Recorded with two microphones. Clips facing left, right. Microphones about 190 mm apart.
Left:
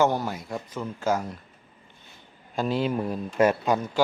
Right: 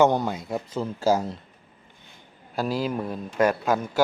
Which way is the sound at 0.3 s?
25° right (ahead or behind).